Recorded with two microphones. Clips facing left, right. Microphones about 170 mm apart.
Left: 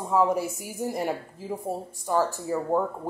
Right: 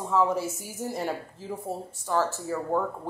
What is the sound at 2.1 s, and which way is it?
Speech, 15° left (ahead or behind).